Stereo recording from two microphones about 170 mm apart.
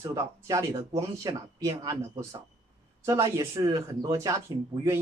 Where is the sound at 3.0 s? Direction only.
20° right (ahead or behind).